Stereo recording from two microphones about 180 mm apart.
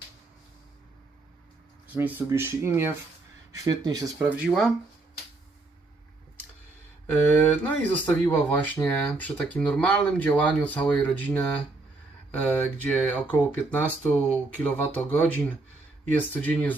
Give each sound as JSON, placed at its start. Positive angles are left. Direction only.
{"t": 1.9, "sound": "speech", "side_deg": -10}
{"t": 4.2, "sound": "speech", "side_deg": -5}
{"t": 7.1, "sound": "speech", "side_deg": 10}